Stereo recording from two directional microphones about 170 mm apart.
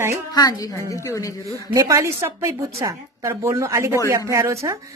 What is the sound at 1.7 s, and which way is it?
A man's voice, 20° right (ahead or behind).